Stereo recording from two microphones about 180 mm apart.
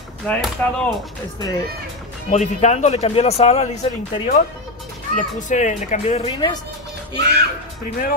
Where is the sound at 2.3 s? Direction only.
40° left (ahead or behind).